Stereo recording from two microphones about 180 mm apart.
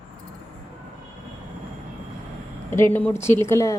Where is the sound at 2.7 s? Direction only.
10° left (ahead or behind).